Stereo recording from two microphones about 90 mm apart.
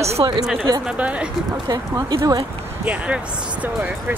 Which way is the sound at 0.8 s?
15° right (ahead or behind).